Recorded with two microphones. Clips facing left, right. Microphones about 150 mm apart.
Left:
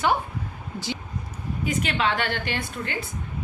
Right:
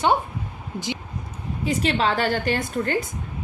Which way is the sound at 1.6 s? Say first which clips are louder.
Right 3 dB; 30° right (ahead or behind).